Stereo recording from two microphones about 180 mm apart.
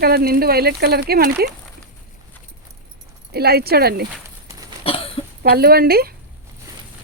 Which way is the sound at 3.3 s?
60° right (ahead or behind).